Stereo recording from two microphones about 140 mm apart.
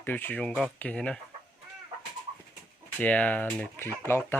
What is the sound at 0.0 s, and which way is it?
Speech, 15° left (ahead or behind).